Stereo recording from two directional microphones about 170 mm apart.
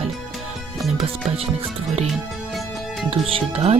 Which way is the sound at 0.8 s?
Centre (ahead or behind).